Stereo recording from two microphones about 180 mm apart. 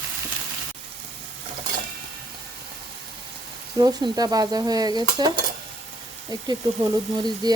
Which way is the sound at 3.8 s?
20° right (ahead or behind).